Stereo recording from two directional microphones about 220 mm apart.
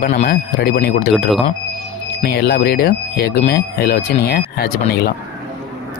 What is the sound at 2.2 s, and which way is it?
Speech, 45° left (ahead or behind).